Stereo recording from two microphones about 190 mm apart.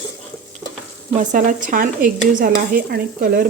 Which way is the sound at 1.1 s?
45° right (ahead or behind).